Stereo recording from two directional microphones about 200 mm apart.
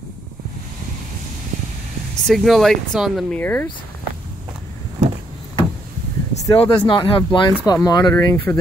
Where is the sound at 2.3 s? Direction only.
Centre (ahead or behind).